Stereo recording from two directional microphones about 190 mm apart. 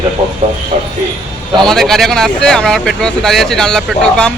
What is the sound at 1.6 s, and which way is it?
Speech, centre (ahead or behind).